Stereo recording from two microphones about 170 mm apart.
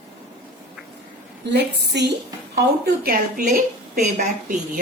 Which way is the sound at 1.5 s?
90° right.